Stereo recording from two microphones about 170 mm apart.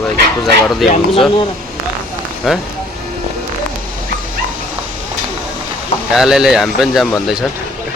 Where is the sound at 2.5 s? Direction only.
Centre (ahead or behind).